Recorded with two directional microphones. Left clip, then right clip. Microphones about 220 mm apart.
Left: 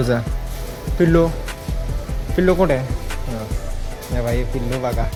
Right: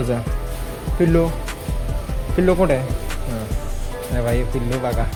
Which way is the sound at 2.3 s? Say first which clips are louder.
Left 1 dB; 10° left (ahead or behind).